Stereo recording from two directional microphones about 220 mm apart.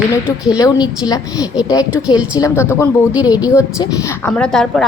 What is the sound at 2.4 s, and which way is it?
Speech, 15° left (ahead or behind).